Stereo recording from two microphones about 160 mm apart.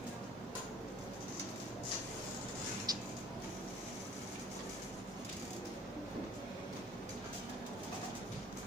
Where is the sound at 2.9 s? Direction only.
25° right (ahead or behind).